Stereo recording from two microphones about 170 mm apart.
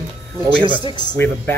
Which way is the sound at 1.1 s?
10° left (ahead or behind).